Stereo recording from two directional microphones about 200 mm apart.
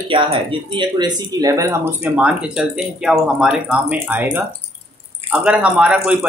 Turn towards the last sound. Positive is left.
turn(degrees=-5)  # may be behind; listen again after turning